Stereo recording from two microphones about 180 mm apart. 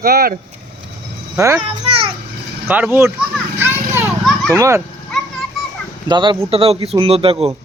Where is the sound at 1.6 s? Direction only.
35° right (ahead or behind).